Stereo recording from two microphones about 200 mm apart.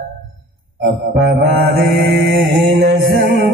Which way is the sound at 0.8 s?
50° right (ahead or behind).